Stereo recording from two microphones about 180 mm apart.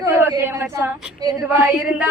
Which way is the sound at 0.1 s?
10° right (ahead or behind).